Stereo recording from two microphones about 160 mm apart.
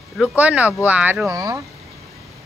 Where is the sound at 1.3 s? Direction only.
20° right (ahead or behind).